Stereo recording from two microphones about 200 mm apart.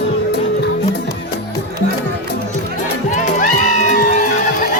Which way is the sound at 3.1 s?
40° left (ahead or behind).